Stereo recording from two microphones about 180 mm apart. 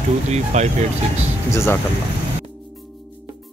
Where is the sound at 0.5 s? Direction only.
40° right (ahead or behind).